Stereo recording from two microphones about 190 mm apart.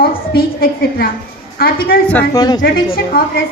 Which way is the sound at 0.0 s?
50° left (ahead or behind).